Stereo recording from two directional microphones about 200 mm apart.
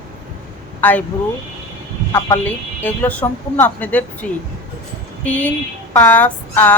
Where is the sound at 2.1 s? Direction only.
15° left (ahead or behind).